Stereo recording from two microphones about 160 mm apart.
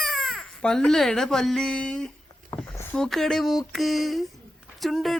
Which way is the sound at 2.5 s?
15° left (ahead or behind).